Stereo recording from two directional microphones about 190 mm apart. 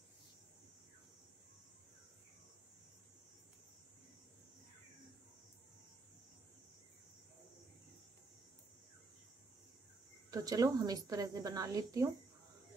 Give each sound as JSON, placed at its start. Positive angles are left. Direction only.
{"t": 10.3, "sound": "speech", "side_deg": -20}